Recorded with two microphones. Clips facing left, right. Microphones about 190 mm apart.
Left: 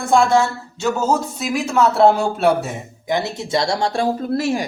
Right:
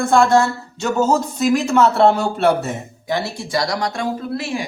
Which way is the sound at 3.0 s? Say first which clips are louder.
Left 2 dB; 20° left (ahead or behind).